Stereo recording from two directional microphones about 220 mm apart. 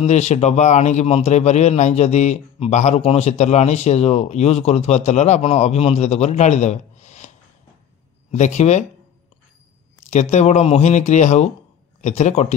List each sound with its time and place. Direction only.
0.0 s a man's voice: 30° left (ahead or behind)
8.3 s speech: 30° left (ahead or behind)
10.3 s a man's voice: 30° left (ahead or behind)